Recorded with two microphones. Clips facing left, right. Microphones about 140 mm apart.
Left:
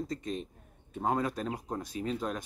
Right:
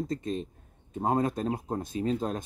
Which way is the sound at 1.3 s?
30° right (ahead or behind).